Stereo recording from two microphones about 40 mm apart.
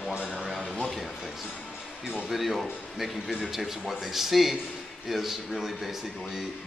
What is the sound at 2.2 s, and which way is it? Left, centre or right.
Speech, centre.